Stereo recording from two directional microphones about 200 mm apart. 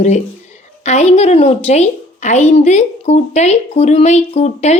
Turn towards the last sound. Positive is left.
turn(degrees=35)  # may be behind; listen again after turning